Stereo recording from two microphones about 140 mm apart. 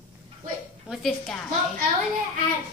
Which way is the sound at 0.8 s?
Centre (ahead or behind).